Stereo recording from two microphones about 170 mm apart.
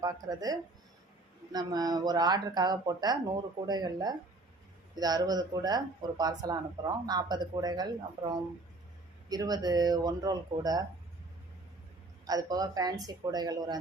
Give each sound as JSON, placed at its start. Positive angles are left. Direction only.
{"t": 0.0, "sound": "speech", "side_deg": -20}
{"t": 12.2, "sound": "speech", "side_deg": -20}